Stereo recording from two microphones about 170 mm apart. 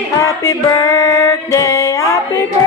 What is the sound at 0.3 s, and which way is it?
Music, 20° left (ahead or behind).